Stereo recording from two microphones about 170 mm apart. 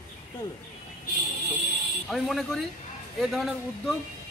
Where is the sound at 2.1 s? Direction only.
Centre (ahead or behind).